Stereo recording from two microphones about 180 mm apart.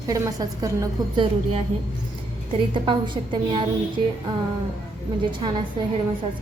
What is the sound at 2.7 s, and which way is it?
Speech, 25° right (ahead or behind).